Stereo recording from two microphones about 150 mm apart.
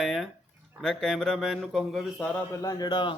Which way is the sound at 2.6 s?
30° left (ahead or behind).